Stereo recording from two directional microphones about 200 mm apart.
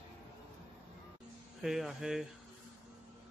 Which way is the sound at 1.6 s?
Centre (ahead or behind).